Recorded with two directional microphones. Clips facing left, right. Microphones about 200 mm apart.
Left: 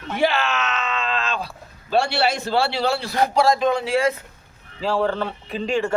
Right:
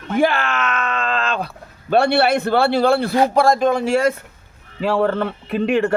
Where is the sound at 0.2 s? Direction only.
50° right (ahead or behind).